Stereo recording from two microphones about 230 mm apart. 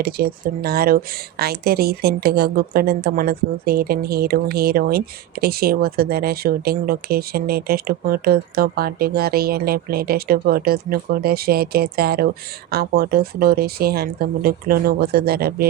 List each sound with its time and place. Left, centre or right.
0.0 s speech: right